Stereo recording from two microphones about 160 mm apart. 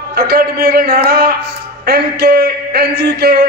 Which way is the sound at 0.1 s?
75° right (ahead or behind).